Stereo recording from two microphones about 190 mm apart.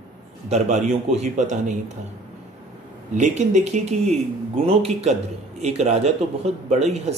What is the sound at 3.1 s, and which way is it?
A man's voice, 40° right (ahead or behind).